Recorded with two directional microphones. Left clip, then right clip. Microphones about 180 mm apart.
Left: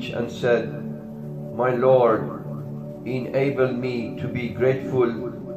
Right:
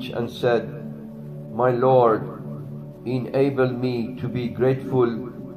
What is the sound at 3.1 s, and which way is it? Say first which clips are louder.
A man's voice: right 1 dB; 50° right (ahead or behind).